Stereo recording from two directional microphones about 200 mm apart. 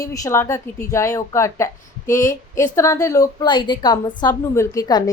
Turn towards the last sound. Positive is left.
turn(degrees=20)  # may be behind; listen again after turning